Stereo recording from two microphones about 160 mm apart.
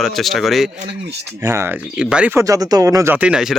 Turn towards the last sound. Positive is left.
turn(degrees=-5)  # may be behind; listen again after turning